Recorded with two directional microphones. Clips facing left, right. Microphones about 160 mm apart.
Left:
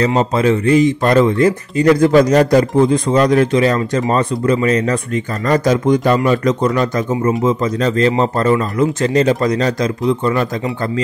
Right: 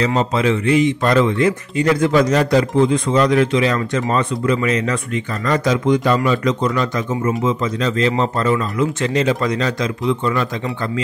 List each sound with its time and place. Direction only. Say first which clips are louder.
0.0 s speech: left 3 dB; 40° left (ahead or behind)